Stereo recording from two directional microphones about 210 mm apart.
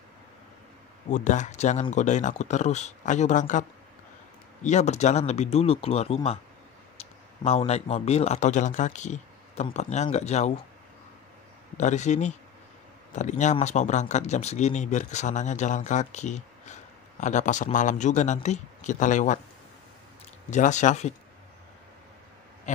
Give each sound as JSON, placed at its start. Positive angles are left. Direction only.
{"t": 1.1, "sound": "speech", "side_deg": 35}
{"t": 4.6, "sound": "speech", "side_deg": 35}
{"t": 11.7, "sound": "speech", "side_deg": 35}
{"t": 20.4, "sound": "speech", "side_deg": 35}